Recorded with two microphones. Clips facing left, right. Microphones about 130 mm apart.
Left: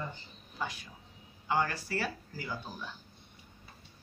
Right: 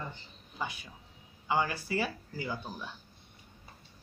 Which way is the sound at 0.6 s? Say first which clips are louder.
Even; 15° right (ahead or behind).